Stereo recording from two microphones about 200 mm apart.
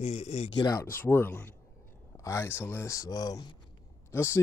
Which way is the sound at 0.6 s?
20° left (ahead or behind).